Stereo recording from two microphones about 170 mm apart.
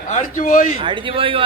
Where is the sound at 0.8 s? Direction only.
30° right (ahead or behind).